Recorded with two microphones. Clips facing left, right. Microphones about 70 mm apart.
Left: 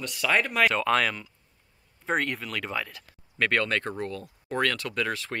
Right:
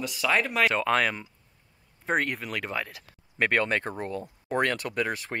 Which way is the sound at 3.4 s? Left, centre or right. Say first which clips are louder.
Right 1 dB; centre.